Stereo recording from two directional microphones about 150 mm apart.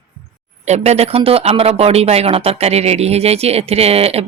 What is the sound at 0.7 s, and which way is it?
Speech, 45° right (ahead or behind).